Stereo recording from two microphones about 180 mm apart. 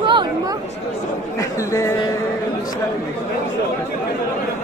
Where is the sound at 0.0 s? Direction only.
25° right (ahead or behind).